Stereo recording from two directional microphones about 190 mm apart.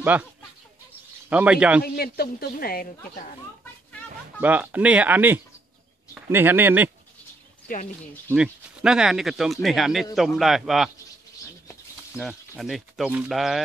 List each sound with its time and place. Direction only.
0.0 s speech: 10° right (ahead or behind)
1.3 s speech: 5° right (ahead or behind)
2.0 s a woman's voice: 55° left (ahead or behind)
4.4 s speech: 10° right (ahead or behind)
7.6 s speech: 45° left (ahead or behind)
8.3 s speech: 5° right (ahead or behind)
12.2 s speech: centre (ahead or behind)